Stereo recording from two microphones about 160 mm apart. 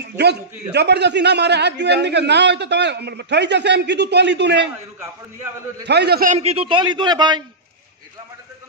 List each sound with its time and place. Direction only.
0.2 s a man's voice: 90° right
5.9 s a man's voice: 90° right
6.3 s a man's voice: 40° right (ahead or behind)